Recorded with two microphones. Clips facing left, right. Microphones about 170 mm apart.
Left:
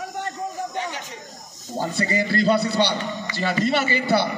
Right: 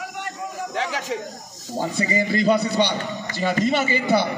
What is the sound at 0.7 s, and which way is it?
Snake, 90° right.